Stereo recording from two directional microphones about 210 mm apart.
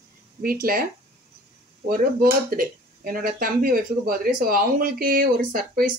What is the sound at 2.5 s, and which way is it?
A woman's voice, 40° right (ahead or behind).